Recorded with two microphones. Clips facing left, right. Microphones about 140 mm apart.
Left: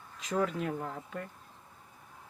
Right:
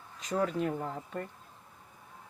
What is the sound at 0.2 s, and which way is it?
Speech, centre (ahead or behind).